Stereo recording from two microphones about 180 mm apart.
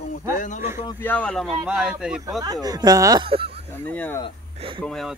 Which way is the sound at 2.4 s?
20° right (ahead or behind).